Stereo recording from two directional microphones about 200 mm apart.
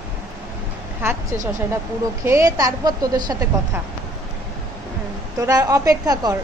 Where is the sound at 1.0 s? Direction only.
10° right (ahead or behind).